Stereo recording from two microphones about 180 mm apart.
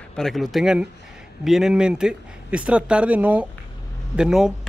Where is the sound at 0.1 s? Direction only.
Centre (ahead or behind).